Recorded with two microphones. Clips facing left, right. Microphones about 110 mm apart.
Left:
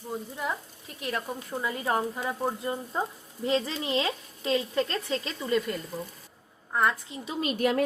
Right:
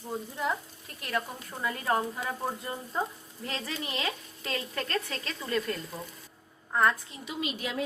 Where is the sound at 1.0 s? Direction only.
20° left (ahead or behind).